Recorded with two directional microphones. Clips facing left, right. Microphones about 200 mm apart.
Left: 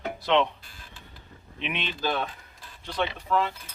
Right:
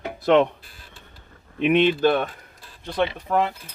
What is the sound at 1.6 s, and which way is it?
Speech, 50° right (ahead or behind).